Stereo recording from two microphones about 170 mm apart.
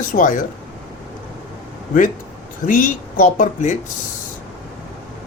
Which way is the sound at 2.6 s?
50° left (ahead or behind).